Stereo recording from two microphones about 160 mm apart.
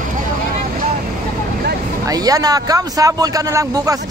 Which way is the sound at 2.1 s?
20° right (ahead or behind).